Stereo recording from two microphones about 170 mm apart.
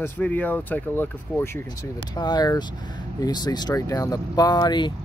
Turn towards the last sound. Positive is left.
turn(degrees=25)  # may be behind; listen again after turning